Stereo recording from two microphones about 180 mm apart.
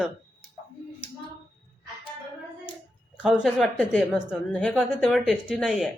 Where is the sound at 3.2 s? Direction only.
5° right (ahead or behind).